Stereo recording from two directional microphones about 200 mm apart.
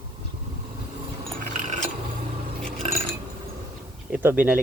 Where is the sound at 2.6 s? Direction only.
5° left (ahead or behind).